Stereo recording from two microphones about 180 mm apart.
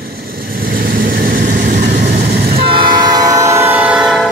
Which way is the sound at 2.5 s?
30° right (ahead or behind).